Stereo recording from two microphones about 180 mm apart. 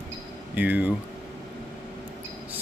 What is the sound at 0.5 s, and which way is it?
Speech, 10° right (ahead or behind).